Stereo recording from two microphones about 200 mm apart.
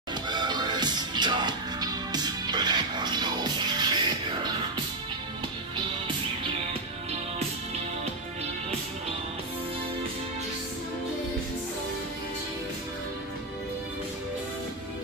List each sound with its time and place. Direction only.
0.3 s music: 20° right (ahead or behind)